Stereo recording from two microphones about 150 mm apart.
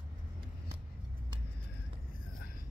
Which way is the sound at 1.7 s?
80° left.